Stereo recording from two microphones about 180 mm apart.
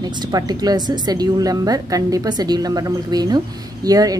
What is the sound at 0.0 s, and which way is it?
A woman's voice, 25° right (ahead or behind).